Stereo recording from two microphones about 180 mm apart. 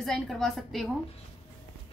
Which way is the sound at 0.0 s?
Centre (ahead or behind).